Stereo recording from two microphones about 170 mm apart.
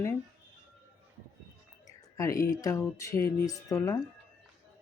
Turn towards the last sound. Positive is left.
turn(degrees=20)  # may be behind; listen again after turning